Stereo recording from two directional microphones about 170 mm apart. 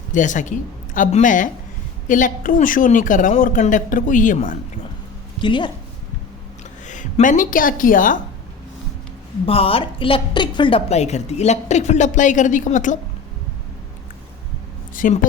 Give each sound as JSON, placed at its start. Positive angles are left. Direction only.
{"t": 0.1, "sound": "a woman's voice", "side_deg": 50}
{"t": 5.4, "sound": "a woman's voice", "side_deg": 30}
{"t": 6.8, "sound": "a woman's voice", "side_deg": 45}
{"t": 9.5, "sound": "a woman's voice", "side_deg": 35}
{"t": 14.9, "sound": "a woman's voice", "side_deg": 50}